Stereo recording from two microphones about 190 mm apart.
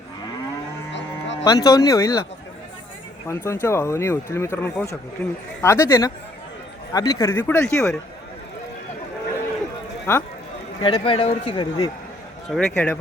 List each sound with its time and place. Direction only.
0.9 s cattle: 70° left (ahead or behind)
1.5 s speech: 20° left (ahead or behind)
3.2 s speech: 15° left (ahead or behind)
5.6 s speech: 15° left (ahead or behind)
10.1 s speech: 15° left (ahead or behind)
10.8 s speech: 25° left (ahead or behind)
12.5 s speech: 5° left (ahead or behind)